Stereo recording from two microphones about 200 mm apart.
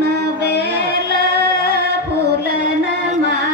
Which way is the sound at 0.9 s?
50° right (ahead or behind).